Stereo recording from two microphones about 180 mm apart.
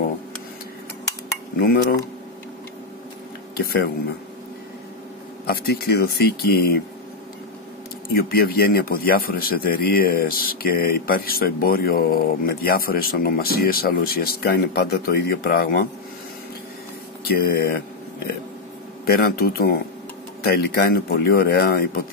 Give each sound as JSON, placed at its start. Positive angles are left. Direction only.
{"t": 1.6, "sound": "speech", "side_deg": 55}
{"t": 5.5, "sound": "speech", "side_deg": 60}
{"t": 8.1, "sound": "speech", "side_deg": 55}
{"t": 17.2, "sound": "speech", "side_deg": 60}